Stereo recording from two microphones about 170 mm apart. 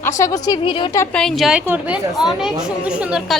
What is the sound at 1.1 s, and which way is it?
A woman's voice, centre (ahead or behind).